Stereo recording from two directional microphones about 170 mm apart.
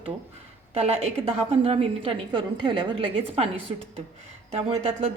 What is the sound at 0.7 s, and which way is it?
A woman's voice, 35° right (ahead or behind).